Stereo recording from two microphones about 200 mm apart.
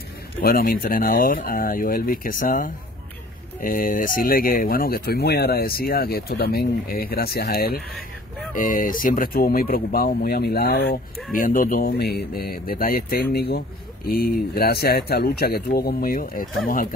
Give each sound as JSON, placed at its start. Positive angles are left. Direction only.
{"t": 0.4, "sound": "speech", "side_deg": 45}
{"t": 11.3, "sound": "speech", "side_deg": 45}